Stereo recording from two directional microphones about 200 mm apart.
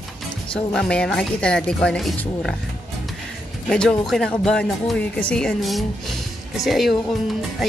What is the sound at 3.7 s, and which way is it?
Speech, 5° left (ahead or behind).